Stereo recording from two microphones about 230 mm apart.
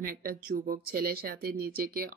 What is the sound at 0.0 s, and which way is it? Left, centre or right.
Speech, right.